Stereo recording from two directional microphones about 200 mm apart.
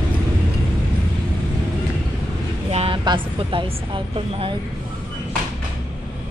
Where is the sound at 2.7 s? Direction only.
30° right (ahead or behind).